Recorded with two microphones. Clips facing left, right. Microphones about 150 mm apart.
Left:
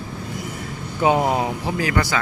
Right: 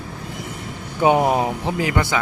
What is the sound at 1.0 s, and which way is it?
Speech, 20° right (ahead or behind).